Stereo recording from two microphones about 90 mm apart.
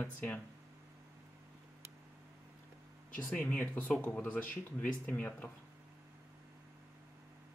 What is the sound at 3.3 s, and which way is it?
Speech, 15° left (ahead or behind).